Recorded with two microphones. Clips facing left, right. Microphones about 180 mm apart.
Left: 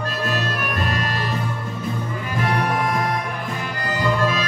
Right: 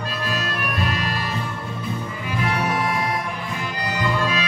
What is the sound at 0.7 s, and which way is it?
Music, 45° left (ahead or behind).